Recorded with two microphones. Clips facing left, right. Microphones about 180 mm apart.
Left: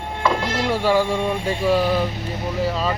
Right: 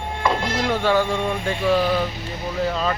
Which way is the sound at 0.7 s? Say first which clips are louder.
Left 1 dB; 10° left (ahead or behind).